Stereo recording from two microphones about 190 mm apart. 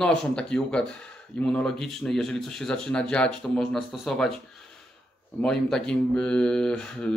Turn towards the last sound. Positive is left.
turn(degrees=5)  # may be behind; listen again after turning